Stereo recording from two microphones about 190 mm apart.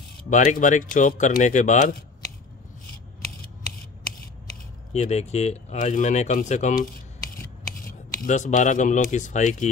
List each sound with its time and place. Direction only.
0.3 s speech: 40° left (ahead or behind)
4.9 s speech: 35° left (ahead or behind)